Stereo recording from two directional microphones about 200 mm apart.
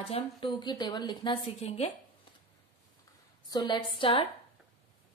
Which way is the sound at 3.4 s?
20° left (ahead or behind).